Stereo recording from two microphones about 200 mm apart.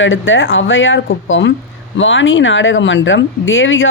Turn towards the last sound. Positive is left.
turn(degrees=75)  # may be behind; listen again after turning